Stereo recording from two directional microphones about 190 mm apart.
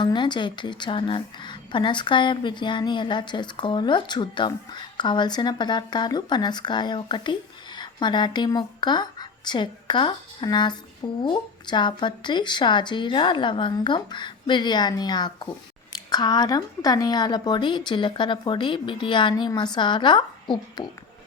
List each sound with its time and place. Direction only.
0.0 s a woman's voice: 25° left (ahead or behind)